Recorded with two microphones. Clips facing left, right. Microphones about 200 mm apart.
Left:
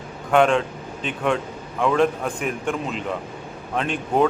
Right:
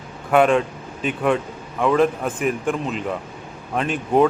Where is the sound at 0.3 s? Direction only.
5° right (ahead or behind).